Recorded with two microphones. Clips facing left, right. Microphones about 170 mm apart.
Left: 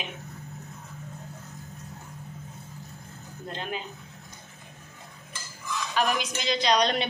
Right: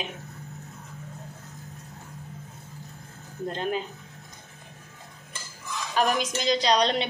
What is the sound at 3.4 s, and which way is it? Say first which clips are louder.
Speech: right 6 dB; 40° right (ahead or behind).